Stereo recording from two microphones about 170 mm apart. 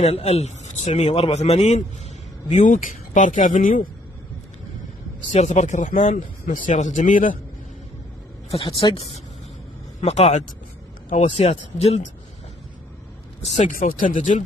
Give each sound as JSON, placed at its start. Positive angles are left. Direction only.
{"t": 0.0, "sound": "speech", "side_deg": 40}
{"t": 2.5, "sound": "speech", "side_deg": 50}
{"t": 5.3, "sound": "speech", "side_deg": 40}
{"t": 8.5, "sound": "speech", "side_deg": 35}
{"t": 13.7, "sound": "speech", "side_deg": 55}